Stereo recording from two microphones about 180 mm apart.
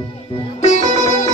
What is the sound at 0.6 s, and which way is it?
Sitar, 40° left (ahead or behind).